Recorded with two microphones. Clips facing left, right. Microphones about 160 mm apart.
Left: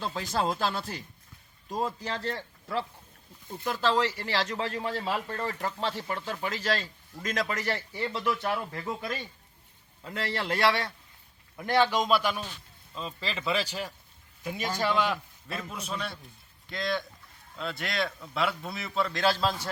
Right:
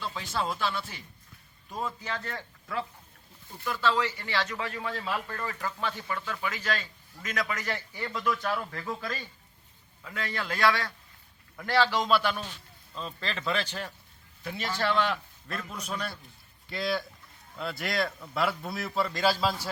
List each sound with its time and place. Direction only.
0.0 s a man's voice: 40° left (ahead or behind); by 19.5 s 5° right (ahead or behind)